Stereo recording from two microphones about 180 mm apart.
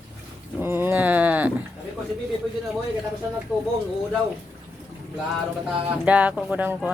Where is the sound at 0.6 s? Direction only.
10° right (ahead or behind).